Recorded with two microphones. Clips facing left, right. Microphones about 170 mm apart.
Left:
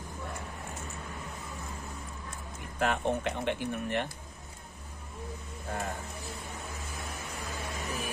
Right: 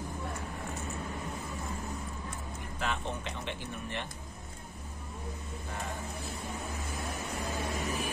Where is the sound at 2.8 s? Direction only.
55° left (ahead or behind).